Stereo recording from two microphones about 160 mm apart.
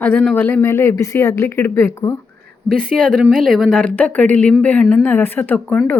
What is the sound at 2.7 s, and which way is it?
Speech, 5° left (ahead or behind).